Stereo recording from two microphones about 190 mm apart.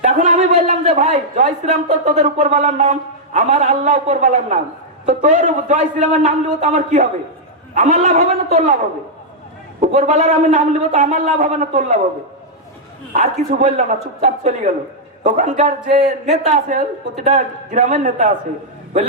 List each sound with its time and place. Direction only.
0.0 s a man's voice: 40° right (ahead or behind)
9.9 s a man's voice: 40° right (ahead or behind)
13.1 s a man's voice: 40° right (ahead or behind)